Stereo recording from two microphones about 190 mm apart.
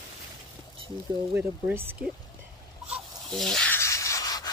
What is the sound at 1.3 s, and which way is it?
Speech, 10° right (ahead or behind).